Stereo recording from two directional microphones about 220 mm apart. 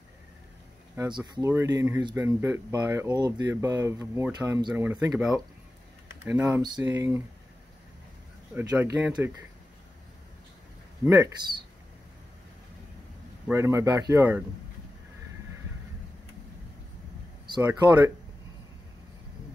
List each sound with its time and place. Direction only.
0.9 s speech: 20° right (ahead or behind)
6.2 s speech: 10° right (ahead or behind)
8.5 s speech: 10° right (ahead or behind)
11.1 s speech: 15° right (ahead or behind)
13.5 s speech: 10° right (ahead or behind)
17.5 s speech: 15° right (ahead or behind)